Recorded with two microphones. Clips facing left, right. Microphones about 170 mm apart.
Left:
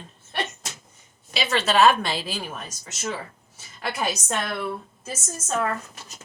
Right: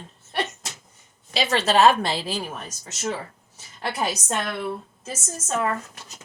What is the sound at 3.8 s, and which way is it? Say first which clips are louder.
Speech: right 1 dB; 30° right (ahead or behind).